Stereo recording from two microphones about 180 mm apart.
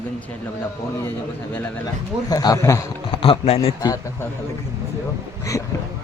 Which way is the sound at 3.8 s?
20° left (ahead or behind).